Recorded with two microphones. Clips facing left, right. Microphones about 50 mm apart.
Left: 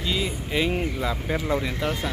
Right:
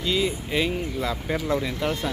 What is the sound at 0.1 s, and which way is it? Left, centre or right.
Speech, centre.